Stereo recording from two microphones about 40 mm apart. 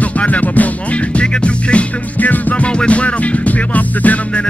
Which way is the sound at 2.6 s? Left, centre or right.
Left.